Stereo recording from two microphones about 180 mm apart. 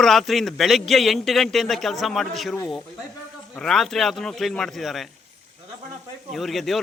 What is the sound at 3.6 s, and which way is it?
A man's voice, centre (ahead or behind).